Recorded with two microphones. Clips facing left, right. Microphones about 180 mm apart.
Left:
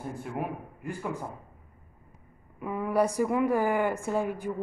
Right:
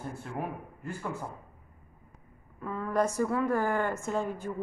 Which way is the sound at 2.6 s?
15° left (ahead or behind).